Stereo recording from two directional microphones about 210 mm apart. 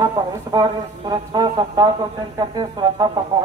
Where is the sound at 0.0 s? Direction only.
20° right (ahead or behind).